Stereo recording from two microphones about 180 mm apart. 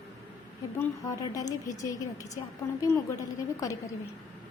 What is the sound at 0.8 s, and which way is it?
A woman's voice, 20° left (ahead or behind).